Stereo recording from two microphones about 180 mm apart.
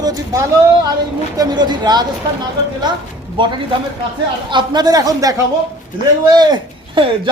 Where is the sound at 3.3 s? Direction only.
25° right (ahead or behind).